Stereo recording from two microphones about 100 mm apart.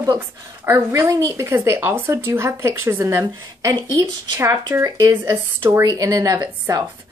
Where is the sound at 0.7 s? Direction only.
35° right (ahead or behind).